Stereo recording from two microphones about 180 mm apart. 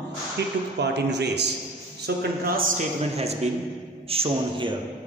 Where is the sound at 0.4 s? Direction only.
65° right (ahead or behind).